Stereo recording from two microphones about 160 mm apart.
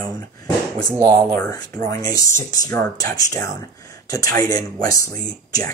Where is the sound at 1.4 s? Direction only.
20° left (ahead or behind).